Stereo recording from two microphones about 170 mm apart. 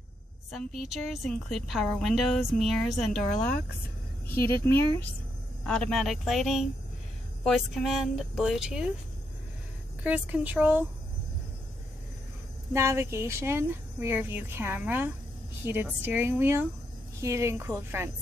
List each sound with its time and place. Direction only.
0.7 s a woman's voice: centre (ahead or behind)
4.3 s speech: 65° left (ahead or behind)
5.6 s a woman's voice: 5° left (ahead or behind)
10.0 s speech: 10° right (ahead or behind)
12.7 s speech: 15° right (ahead or behind)